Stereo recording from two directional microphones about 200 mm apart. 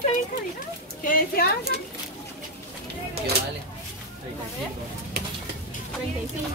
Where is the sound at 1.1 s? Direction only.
45° left (ahead or behind).